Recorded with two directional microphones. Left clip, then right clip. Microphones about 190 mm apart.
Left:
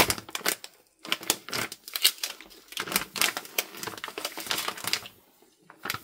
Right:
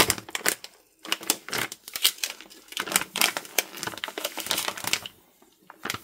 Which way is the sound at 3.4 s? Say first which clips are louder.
Right 3 dB; 25° right (ahead or behind).